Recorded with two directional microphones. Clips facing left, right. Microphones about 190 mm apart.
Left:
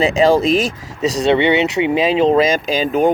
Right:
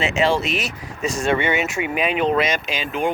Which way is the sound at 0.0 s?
35° left (ahead or behind).